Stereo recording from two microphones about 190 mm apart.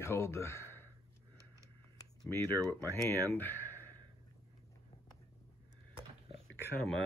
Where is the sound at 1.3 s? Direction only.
15° right (ahead or behind).